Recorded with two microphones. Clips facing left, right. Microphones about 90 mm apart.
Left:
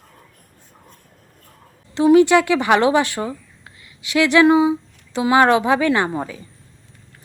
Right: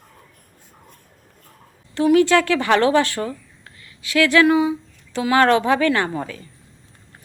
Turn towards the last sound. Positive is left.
turn(degrees=15)  # may be behind; listen again after turning